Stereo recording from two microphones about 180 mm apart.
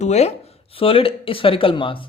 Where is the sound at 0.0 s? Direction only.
40° left (ahead or behind).